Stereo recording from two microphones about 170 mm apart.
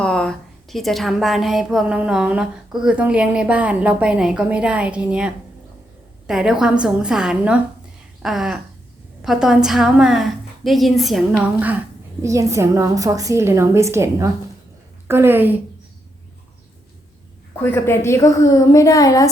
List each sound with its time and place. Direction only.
0.0 s a woman's voice: 5° left (ahead or behind); by 15.5 s 10° right (ahead or behind)
17.6 s a woman's voice: 15° left (ahead or behind)